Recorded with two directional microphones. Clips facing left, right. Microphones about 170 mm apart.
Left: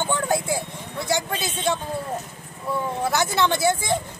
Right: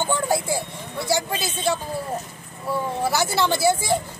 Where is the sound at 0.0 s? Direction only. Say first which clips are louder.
Right 1 dB; 10° right (ahead or behind).